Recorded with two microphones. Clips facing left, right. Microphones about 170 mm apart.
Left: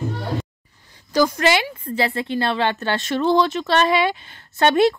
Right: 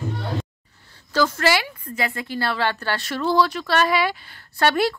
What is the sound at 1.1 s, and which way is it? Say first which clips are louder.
Speech: left 3 dB; 15° left (ahead or behind).